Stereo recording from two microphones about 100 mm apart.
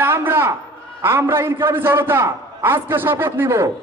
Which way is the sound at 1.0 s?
25° right (ahead or behind).